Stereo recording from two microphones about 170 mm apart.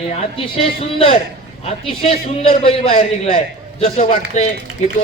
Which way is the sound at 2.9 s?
50° left (ahead or behind).